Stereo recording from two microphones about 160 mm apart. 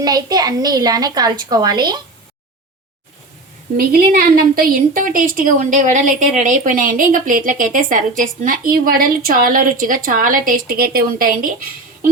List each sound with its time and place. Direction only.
0.0 s a woman's voice: 25° right (ahead or behind)
3.8 s a woman's voice: 65° right (ahead or behind)